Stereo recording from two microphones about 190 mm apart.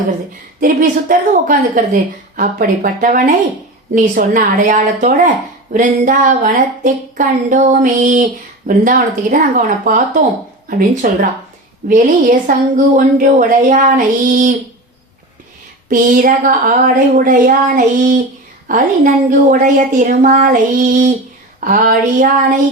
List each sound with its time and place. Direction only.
0.6 s speech: 45° right (ahead or behind)
15.9 s speech: 45° right (ahead or behind)